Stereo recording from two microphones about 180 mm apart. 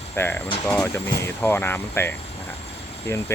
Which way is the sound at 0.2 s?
15° left (ahead or behind).